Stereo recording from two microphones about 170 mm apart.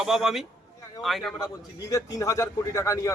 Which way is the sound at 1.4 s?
20° left (ahead or behind).